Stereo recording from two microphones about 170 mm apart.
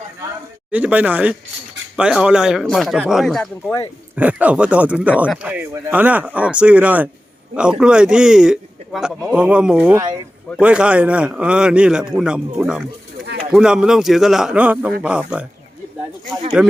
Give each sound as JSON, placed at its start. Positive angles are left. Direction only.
{"t": 0.7, "sound": "a man's voice", "side_deg": -10}
{"t": 4.1, "sound": "a man's voice", "side_deg": -10}
{"t": 10.0, "sound": "speech", "side_deg": -25}
{"t": 10.6, "sound": "a man's voice", "side_deg": -5}
{"t": 16.6, "sound": "a man's voice", "side_deg": -5}